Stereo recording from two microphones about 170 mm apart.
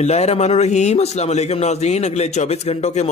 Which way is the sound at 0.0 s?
40° left (ahead or behind).